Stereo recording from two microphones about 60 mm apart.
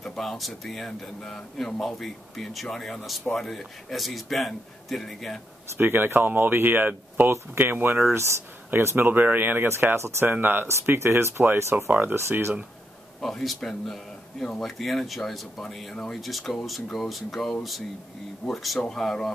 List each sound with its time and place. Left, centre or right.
0.0 s speech: centre
5.8 s speech: right
8.1 s speech: right
8.9 s speech: right
10.3 s speech: right
10.7 s speech: right
11.7 s speech: right
12.2 s speech: right
13.2 s speech: centre